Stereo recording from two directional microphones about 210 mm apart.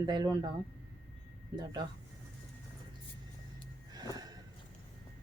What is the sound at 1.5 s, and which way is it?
Speech, 20° right (ahead or behind).